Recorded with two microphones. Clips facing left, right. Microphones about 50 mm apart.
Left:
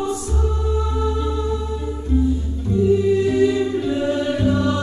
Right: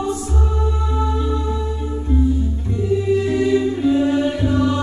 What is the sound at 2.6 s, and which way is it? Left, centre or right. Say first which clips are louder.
Music: left 4 dB; right.